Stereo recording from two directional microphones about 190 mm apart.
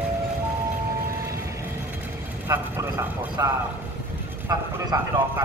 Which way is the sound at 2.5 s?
15° right (ahead or behind).